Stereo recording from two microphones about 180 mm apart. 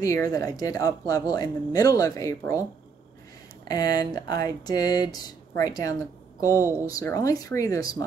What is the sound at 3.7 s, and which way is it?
Speech, 20° left (ahead or behind).